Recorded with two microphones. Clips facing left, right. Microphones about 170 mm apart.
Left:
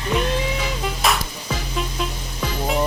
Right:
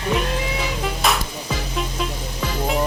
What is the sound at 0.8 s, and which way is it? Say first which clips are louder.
Music: even; centre (ahead or behind).